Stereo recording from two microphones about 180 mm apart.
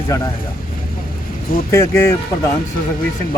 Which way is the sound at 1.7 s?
15° left (ahead or behind).